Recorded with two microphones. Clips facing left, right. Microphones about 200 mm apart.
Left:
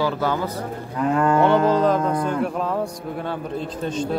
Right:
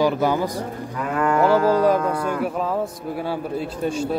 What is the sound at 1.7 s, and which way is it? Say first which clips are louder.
A man's voice: right 1 dB; 10° right (ahead or behind).